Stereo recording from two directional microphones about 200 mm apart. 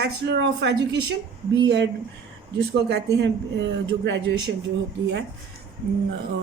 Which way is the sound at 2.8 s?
55° right (ahead or behind).